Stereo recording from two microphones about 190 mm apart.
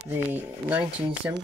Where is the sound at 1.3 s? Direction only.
10° right (ahead or behind).